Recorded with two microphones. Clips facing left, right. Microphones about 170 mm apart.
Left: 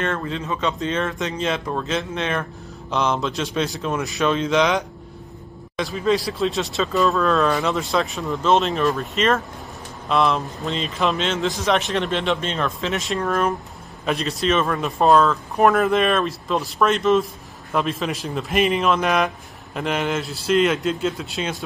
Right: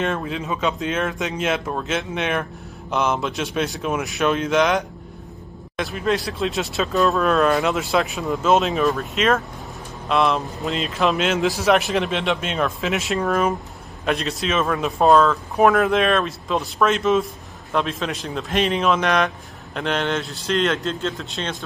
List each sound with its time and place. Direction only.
0.0 s speech: 10° right (ahead or behind)
0.7 s a man's voice: centre (ahead or behind)